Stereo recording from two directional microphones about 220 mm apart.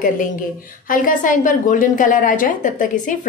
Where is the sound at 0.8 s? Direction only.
40° left (ahead or behind).